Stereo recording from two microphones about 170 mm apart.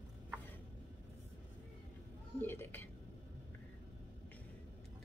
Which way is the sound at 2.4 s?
15° left (ahead or behind).